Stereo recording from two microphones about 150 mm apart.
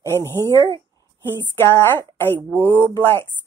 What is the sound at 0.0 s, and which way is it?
Speech, 15° left (ahead or behind).